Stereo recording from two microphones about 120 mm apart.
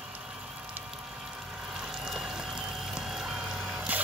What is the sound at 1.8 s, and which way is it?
Vehicle, 5° right (ahead or behind).